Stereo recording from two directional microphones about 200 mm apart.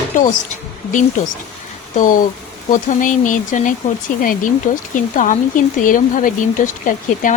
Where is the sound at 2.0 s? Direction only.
40° left (ahead or behind).